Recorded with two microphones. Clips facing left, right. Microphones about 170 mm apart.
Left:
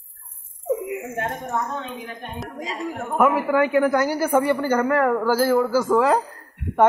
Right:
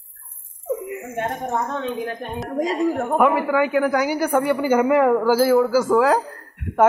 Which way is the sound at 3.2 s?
5° left (ahead or behind).